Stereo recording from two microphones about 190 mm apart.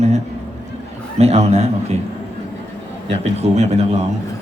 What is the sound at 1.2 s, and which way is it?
Speech, 35° right (ahead or behind).